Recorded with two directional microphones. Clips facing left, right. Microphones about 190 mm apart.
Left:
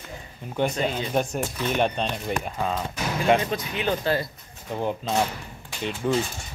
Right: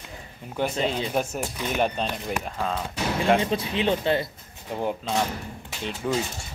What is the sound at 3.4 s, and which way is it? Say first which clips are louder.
Speech: right 2 dB; 30° right (ahead or behind).